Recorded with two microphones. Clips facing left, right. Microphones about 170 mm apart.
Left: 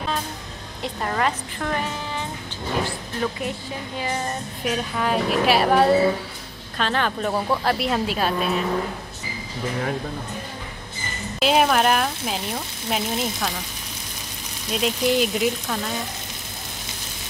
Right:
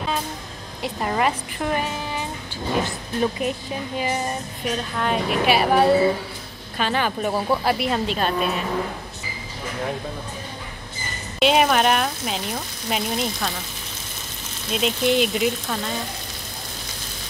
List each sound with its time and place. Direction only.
0.8 s a woman's voice: 10° right (ahead or behind)
4.6 s speech: 5° left (ahead or behind)
11.3 s speech: centre (ahead or behind)
14.7 s speech: centre (ahead or behind)